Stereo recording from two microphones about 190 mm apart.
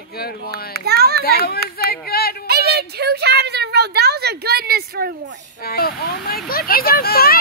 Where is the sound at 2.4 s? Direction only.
55° right (ahead or behind).